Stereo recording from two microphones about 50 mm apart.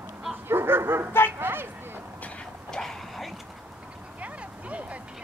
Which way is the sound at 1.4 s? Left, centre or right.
Right.